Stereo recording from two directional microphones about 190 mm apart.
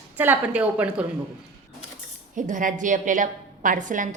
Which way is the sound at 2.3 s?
45° right (ahead or behind).